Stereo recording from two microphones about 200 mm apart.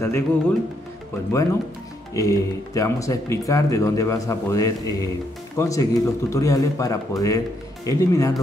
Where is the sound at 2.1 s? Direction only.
15° left (ahead or behind).